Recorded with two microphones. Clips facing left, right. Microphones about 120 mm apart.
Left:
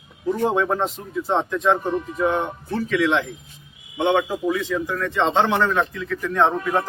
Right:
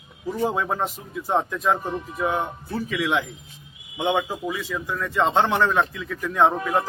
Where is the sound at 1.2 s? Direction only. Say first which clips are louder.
Left 2 dB; 10° right (ahead or behind).